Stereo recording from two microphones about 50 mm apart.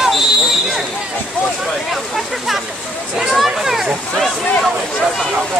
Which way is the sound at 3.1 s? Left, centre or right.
Centre.